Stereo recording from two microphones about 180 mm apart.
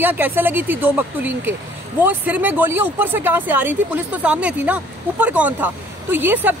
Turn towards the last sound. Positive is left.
turn(degrees=-10)  # may be behind; listen again after turning